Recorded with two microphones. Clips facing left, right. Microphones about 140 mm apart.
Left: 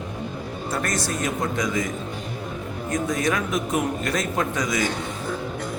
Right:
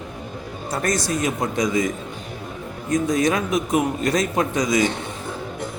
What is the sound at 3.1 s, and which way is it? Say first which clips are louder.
A man's voice: right 4 dB; 20° right (ahead or behind).